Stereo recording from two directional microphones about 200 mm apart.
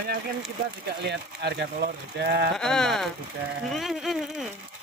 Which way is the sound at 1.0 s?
55° right (ahead or behind).